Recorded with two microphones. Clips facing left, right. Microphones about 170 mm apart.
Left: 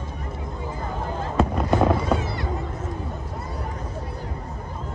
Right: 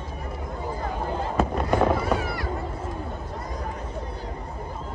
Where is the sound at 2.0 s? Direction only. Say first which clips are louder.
Left 1 dB; 20° left (ahead or behind).